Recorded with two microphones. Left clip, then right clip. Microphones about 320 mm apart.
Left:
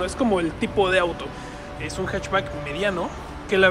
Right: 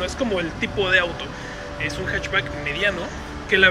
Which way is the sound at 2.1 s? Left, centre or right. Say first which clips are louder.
Even; centre.